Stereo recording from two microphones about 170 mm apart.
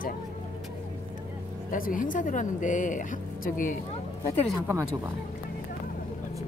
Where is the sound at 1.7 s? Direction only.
55° left (ahead or behind).